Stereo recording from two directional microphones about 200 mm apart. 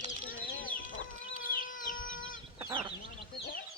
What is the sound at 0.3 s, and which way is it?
Chicken, 45° left (ahead or behind).